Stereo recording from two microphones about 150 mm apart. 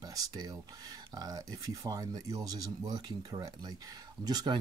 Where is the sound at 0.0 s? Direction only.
25° right (ahead or behind).